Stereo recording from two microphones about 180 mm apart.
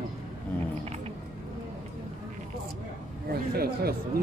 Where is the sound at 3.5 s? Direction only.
60° right (ahead or behind).